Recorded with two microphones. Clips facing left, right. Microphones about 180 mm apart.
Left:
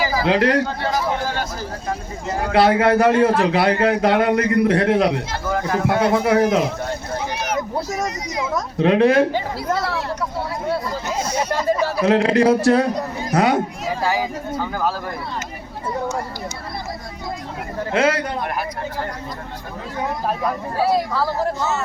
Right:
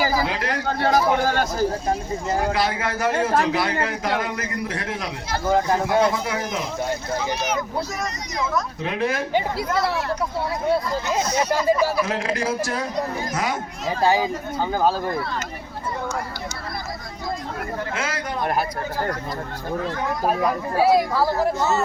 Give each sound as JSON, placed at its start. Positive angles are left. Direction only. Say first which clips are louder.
{"t": 0.3, "sound": "a woman's voice", "louder": "left 10 dB", "side_deg": 70}
{"t": 0.7, "sound": "speech", "louder": "right 3 dB", "side_deg": -50}
{"t": 2.5, "sound": "a man's voice", "louder": "left 9 dB", "side_deg": 65}
{"t": 5.5, "sound": "speech", "louder": "right 2 dB", "side_deg": -30}
{"t": 5.9, "sound": "a man's voice", "louder": "left 7 dB", "side_deg": 60}
{"t": 8.8, "sound": "a woman's voice", "louder": "left 14 dB", "side_deg": 70}
{"t": 9.3, "sound": "speech", "louder": "even", "side_deg": -15}
{"t": 12.0, "sound": "a man's voice", "louder": "left 10 dB", "side_deg": 65}
{"t": 14.0, "sound": "speech", "louder": "right 3 dB", "side_deg": -25}
{"t": 17.9, "sound": "a man's voice", "louder": "left 15 dB", "side_deg": 60}
{"t": 20.2, "sound": "speech", "louder": "right 4 dB", "side_deg": -5}